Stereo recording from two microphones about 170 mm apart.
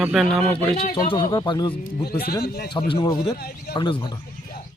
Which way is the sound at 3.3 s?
70° left (ahead or behind).